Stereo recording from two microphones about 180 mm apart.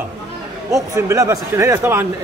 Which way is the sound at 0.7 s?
15° right (ahead or behind).